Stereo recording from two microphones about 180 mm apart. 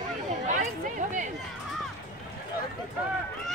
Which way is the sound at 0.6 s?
45° right (ahead or behind).